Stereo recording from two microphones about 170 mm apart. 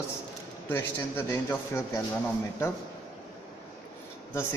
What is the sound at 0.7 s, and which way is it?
Speech, 15° left (ahead or behind).